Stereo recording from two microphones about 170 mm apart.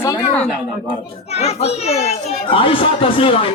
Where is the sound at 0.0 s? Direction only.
20° left (ahead or behind).